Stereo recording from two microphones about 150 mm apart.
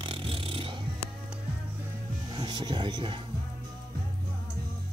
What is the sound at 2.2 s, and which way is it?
Music, 30° right (ahead or behind).